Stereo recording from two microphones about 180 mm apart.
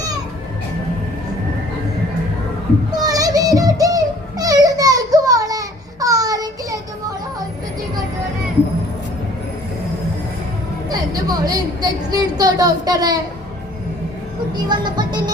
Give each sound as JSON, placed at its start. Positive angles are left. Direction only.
{"t": 2.9, "sound": "music", "side_deg": -20}
{"t": 10.8, "sound": "a sound", "side_deg": -20}
{"t": 14.5, "sound": "speech", "side_deg": -25}